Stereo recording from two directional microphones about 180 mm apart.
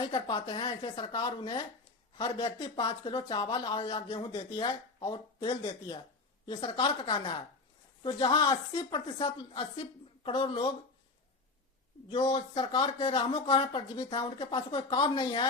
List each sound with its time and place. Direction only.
0.0 s speech: 25° left (ahead or behind)
12.0 s speech: 25° left (ahead or behind)